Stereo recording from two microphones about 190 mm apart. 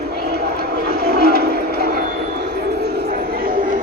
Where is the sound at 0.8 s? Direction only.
55° right (ahead or behind).